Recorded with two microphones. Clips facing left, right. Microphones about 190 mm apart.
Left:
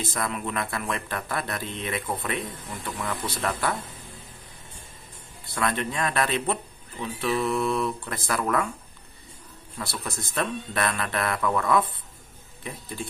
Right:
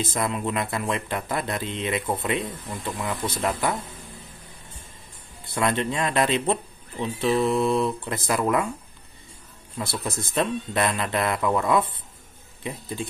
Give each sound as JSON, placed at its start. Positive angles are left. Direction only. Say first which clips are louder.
{"t": 0.0, "sound": "speech", "louder": "right 4 dB", "side_deg": -20}
{"t": 5.5, "sound": "speech", "louder": "right 3 dB", "side_deg": -25}
{"t": 9.8, "sound": "speech", "louder": "right 4 dB", "side_deg": -20}